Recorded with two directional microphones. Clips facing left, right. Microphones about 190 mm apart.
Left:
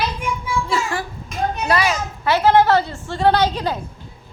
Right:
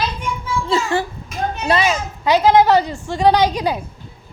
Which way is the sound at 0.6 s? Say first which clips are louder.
Right 7 dB; 25° right (ahead or behind).